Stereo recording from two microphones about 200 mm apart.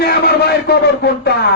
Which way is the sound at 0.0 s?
50° left (ahead or behind).